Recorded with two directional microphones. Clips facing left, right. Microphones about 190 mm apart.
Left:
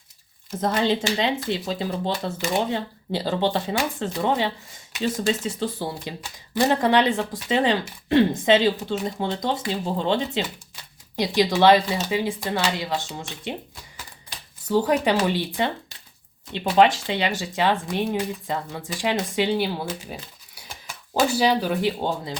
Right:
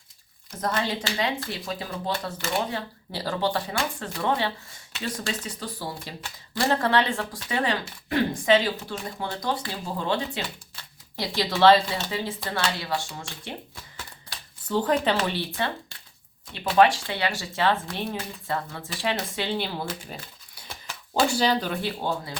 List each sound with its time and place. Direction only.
0.8 s speech: 25° left (ahead or behind)
14.7 s speech: 10° left (ahead or behind)
16.7 s speech: 20° left (ahead or behind)